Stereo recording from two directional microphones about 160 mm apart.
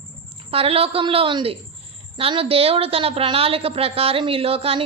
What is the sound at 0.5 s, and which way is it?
A woman's voice, 35° right (ahead or behind).